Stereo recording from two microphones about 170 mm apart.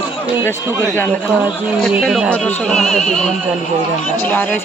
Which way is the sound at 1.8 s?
Centre (ahead or behind).